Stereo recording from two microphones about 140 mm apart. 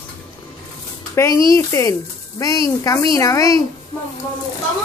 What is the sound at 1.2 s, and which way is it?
Speech, 25° left (ahead or behind).